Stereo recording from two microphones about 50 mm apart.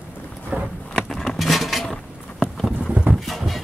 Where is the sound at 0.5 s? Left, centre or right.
Right.